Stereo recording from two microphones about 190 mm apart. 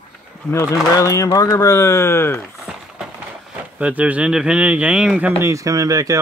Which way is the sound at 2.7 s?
5° right (ahead or behind).